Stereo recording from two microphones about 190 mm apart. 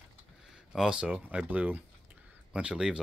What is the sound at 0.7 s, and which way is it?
Speech, 5° right (ahead or behind).